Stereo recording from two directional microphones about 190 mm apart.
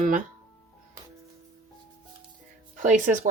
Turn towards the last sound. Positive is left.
turn(degrees=-40)  # may be behind; listen again after turning